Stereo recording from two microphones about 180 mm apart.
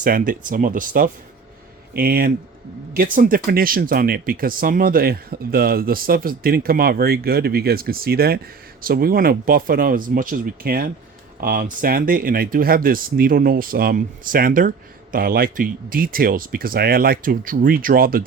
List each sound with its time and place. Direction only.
0.0 s speech: 50° right (ahead or behind)